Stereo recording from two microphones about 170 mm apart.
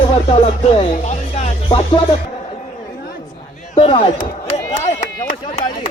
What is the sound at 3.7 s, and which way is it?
Speech, 35° left (ahead or behind).